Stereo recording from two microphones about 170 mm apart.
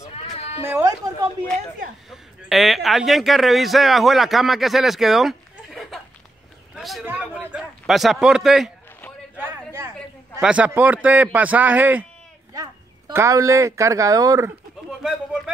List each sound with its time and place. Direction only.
0.1 s cat: 35° left (ahead or behind)
0.7 s a man's voice: 15° right (ahead or behind)
2.0 s a man's voice: centre (ahead or behind)
6.7 s vehicle: centre (ahead or behind)
7.1 s a man's voice: 5° right (ahead or behind)
9.4 s a sound: 15° right (ahead or behind)
10.4 s a man's voice: 10° right (ahead or behind)
14.9 s a sound: 5° right (ahead or behind)